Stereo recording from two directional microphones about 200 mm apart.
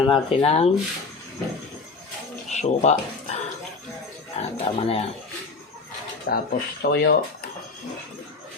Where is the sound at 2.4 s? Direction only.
35° left (ahead or behind).